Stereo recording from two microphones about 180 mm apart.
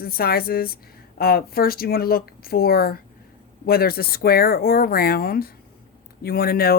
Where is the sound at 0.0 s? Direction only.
55° left (ahead or behind).